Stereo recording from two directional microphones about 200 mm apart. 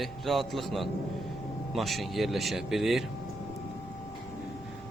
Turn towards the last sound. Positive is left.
turn(degrees=0)  # may be behind; listen again after turning